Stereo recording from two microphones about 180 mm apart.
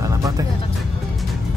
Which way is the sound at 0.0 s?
20° right (ahead or behind).